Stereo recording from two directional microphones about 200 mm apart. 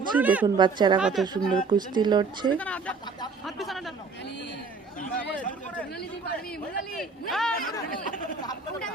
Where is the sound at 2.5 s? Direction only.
5° left (ahead or behind).